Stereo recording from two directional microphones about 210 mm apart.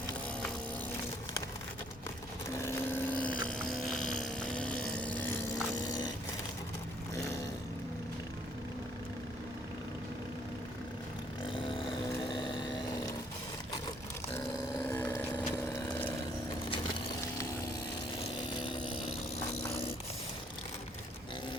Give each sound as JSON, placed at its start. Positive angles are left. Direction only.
{"t": 2.6, "sound": "a sound", "side_deg": 10}
{"t": 3.2, "sound": "vehicle", "side_deg": 40}
{"t": 3.6, "sound": "vehicle", "side_deg": 0}
{"t": 11.4, "sound": "vehicle", "side_deg": 25}
{"t": 14.3, "sound": "a sound", "side_deg": 10}
{"t": 18.6, "sound": "chainsaw", "side_deg": 20}